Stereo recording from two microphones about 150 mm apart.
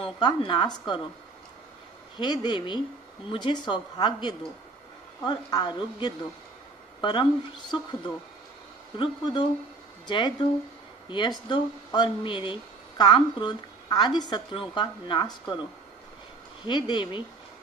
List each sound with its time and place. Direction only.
0.0 s speech: 35° left (ahead or behind)
2.1 s a woman's voice: 30° left (ahead or behind)
8.9 s speech: 30° left (ahead or behind)
16.6 s speech: 30° left (ahead or behind)